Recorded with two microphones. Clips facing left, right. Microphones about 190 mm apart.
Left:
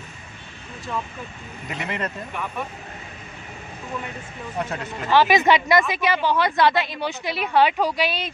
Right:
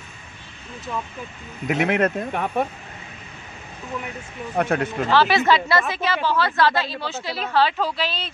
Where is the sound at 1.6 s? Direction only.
75° right (ahead or behind).